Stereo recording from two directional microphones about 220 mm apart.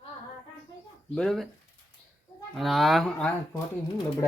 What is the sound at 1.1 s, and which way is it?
Speech, centre (ahead or behind).